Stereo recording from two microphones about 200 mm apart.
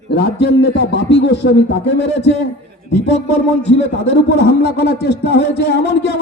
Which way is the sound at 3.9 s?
60° left (ahead or behind).